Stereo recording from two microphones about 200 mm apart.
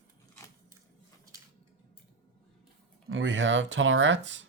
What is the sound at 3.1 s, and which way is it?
Speech, 70° right (ahead or behind).